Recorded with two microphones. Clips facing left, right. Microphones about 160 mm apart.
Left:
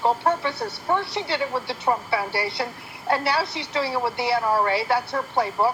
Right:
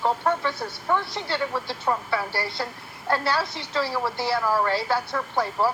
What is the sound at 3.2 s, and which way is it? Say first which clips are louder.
Speech: left 1 dB; 65° left (ahead or behind).